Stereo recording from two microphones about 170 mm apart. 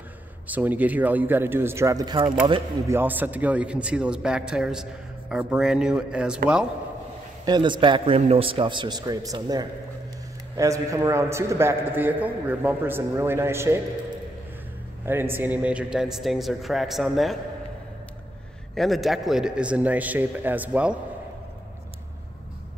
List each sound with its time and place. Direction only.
0.5 s a man's voice: 10° right (ahead or behind); by 2.3 s 25° right (ahead or behind)
2.9 s a man's voice: 10° right (ahead or behind)
7.4 s a man's voice: 25° right (ahead or behind)
15.0 s a man's voice: 15° right (ahead or behind)
18.8 s a man's voice: centre (ahead or behind)